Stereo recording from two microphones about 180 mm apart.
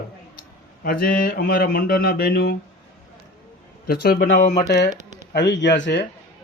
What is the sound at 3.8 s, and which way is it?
Speech, 60° left (ahead or behind).